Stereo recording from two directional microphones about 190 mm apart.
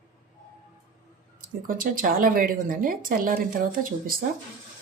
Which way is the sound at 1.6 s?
45° right (ahead or behind).